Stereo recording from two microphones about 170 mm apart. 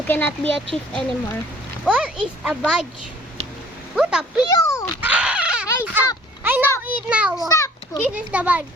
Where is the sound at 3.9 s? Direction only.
5° right (ahead or behind).